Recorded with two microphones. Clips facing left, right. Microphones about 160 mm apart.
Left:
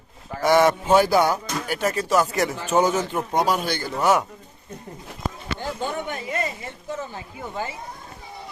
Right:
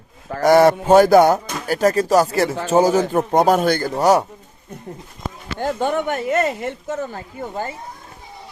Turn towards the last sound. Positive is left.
turn(degrees=-50)  # may be behind; listen again after turning